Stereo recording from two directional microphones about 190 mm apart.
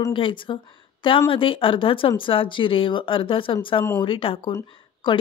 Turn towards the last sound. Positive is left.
turn(degrees=15)  # may be behind; listen again after turning